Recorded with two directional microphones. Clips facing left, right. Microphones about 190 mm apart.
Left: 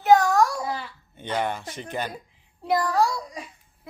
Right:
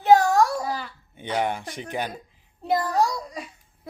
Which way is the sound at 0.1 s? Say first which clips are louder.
Right 1 dB; 30° right (ahead or behind).